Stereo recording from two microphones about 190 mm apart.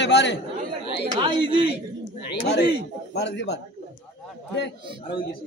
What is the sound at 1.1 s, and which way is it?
Speech, 25° right (ahead or behind).